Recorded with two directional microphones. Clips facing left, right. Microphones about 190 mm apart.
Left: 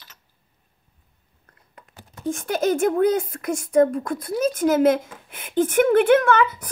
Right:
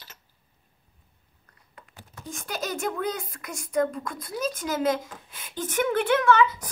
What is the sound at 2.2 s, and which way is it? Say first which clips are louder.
A child's voice: left 11 dB; 50° left (ahead or behind).